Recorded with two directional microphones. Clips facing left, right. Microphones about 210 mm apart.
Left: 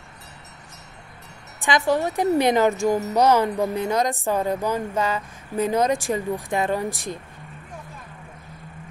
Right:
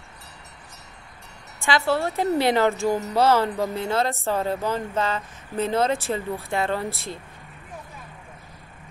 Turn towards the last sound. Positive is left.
turn(degrees=15)  # may be behind; listen again after turning